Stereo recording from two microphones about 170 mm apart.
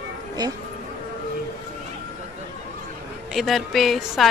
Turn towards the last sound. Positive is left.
turn(degrees=0)  # may be behind; listen again after turning